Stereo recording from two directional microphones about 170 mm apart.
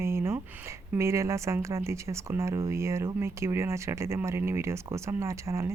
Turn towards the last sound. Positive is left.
turn(degrees=-15)  # may be behind; listen again after turning